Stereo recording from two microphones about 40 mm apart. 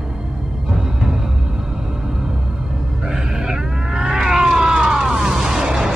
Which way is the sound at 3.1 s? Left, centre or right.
Centre.